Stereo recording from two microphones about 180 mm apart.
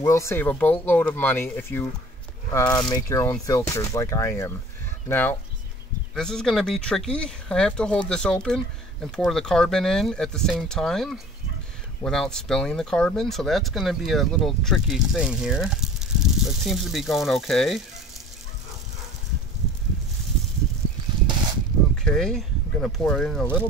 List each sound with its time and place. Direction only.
0.0 s speech: 15° left (ahead or behind); by 17.8 s centre (ahead or behind)
21.9 s speech: 5° left (ahead or behind)